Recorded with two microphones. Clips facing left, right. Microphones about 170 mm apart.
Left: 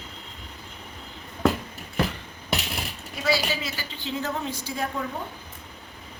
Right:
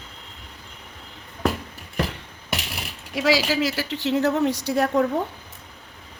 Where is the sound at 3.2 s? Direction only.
90° right; by 5.0 s 70° right (ahead or behind).